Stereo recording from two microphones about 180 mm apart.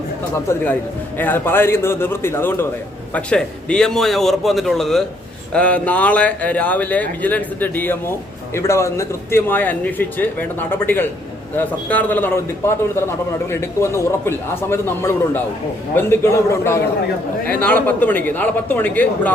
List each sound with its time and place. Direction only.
0.3 s a man's voice: 15° left (ahead or behind)